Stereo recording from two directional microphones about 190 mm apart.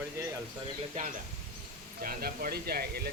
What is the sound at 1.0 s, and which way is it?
Speech, 40° right (ahead or behind).